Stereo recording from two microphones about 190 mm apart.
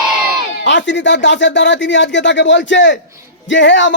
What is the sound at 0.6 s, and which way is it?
A man's voice, 70° left (ahead or behind).